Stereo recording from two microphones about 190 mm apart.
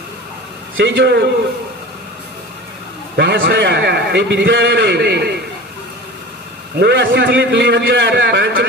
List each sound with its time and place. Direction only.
0.7 s a man's voice: 75° right (ahead or behind)
3.2 s a man's voice: 65° right (ahead or behind)
6.8 s a man's voice: 65° right (ahead or behind)